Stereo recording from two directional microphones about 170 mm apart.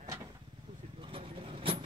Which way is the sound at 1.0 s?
30° right (ahead or behind).